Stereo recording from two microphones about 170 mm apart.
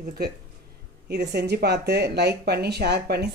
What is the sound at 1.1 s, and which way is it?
A woman's voice, 70° right (ahead or behind).